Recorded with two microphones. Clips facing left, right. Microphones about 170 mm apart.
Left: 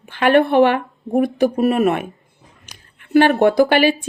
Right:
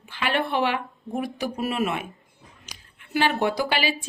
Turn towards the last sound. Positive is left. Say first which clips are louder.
# left 11 dB
turn(degrees=55)  # may be behind; listen again after turning